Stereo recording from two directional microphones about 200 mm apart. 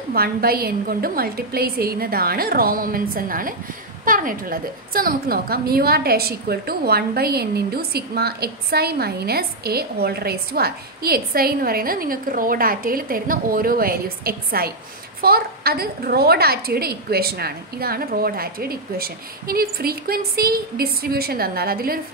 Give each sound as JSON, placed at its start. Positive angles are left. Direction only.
{"t": 0.1, "sound": "a woman's voice", "side_deg": -50}